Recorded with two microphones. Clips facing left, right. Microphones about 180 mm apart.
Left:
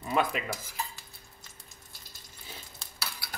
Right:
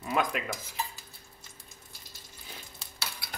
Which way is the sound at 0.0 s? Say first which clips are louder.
Left 1 dB; centre (ahead or behind).